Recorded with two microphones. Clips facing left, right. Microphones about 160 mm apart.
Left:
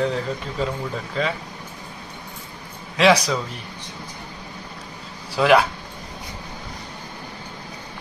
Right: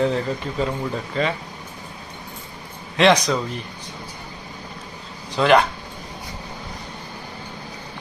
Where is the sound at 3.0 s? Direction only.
5° left (ahead or behind).